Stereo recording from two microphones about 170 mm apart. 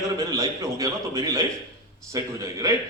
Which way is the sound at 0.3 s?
20° right (ahead or behind).